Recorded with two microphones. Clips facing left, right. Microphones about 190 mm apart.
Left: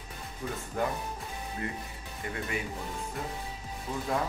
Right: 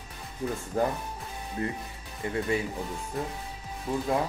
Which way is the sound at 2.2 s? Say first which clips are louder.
Right 7 dB; 25° right (ahead or behind).